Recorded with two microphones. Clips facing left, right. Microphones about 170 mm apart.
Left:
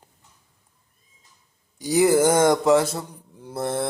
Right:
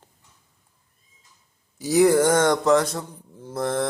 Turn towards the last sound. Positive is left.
turn(degrees=5)  # may be behind; listen again after turning